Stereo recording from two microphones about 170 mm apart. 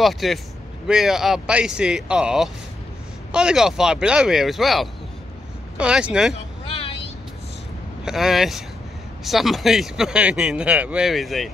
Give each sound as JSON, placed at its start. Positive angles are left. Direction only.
{"t": 0.0, "sound": "speech", "side_deg": 0}
{"t": 6.6, "sound": "vehicle", "side_deg": 30}
{"t": 8.0, "sound": "speech", "side_deg": -5}